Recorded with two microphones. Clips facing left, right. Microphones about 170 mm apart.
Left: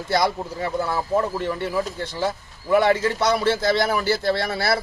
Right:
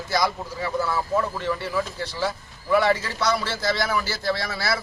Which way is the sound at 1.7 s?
25° left (ahead or behind).